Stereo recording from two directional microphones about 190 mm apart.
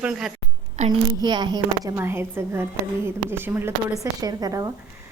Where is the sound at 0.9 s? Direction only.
25° right (ahead or behind).